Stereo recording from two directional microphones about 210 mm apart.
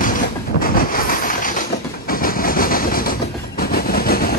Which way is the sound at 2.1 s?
45° left (ahead or behind).